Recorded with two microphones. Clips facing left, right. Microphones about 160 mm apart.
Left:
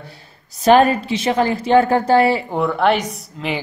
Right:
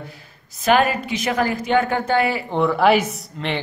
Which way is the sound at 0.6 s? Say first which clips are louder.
Left 5 dB; 30° left (ahead or behind).